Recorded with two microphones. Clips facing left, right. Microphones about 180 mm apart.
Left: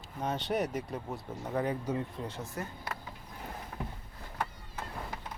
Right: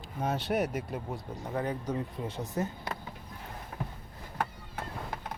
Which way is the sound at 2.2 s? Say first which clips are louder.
Right 6 dB; 15° right (ahead or behind).